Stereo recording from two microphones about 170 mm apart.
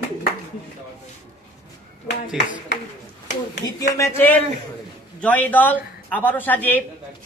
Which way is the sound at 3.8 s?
20° left (ahead or behind).